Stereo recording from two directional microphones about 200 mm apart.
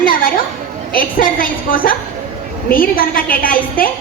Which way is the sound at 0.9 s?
45° left (ahead or behind).